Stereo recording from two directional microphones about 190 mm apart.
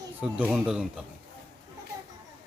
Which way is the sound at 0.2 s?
5° right (ahead or behind).